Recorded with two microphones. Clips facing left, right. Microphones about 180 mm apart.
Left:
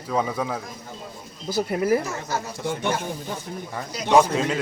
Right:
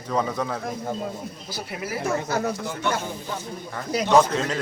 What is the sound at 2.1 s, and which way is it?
Speech, 60° right (ahead or behind).